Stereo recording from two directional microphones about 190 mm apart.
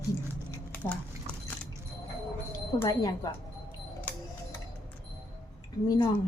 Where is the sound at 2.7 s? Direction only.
20° left (ahead or behind).